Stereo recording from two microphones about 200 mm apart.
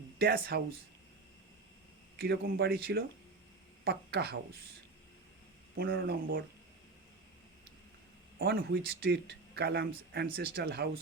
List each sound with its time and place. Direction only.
0.2 s speech: 50° right (ahead or behind)
2.1 s speech: 60° right (ahead or behind)
5.7 s speech: 50° right (ahead or behind)
6.0 s speech: 65° right (ahead or behind)
8.4 s speech: 50° right (ahead or behind)